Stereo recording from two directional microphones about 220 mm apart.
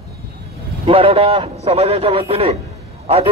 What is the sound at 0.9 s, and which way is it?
A man's voice, 25° right (ahead or behind).